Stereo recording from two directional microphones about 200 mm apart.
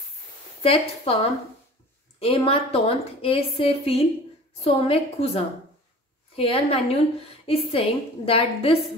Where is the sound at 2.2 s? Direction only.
30° left (ahead or behind).